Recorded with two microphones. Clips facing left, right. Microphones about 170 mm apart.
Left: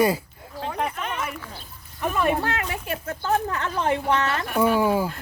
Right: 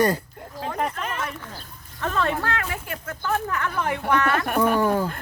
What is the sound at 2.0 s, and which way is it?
Speech, 15° left (ahead or behind).